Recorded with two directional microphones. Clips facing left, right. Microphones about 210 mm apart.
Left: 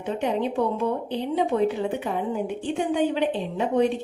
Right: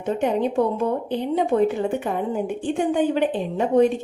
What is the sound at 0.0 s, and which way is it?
Speech, 45° right (ahead or behind).